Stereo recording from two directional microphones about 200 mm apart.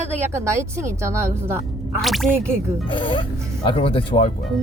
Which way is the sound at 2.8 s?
25° left (ahead or behind).